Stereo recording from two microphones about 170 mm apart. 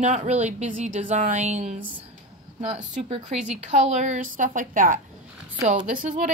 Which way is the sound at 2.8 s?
45° right (ahead or behind).